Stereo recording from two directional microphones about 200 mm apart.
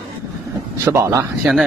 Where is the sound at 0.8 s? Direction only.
15° right (ahead or behind).